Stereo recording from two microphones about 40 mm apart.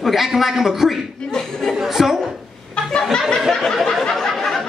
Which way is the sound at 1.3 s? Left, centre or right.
Centre.